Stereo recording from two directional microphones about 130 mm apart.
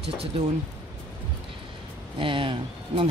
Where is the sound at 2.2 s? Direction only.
40° right (ahead or behind).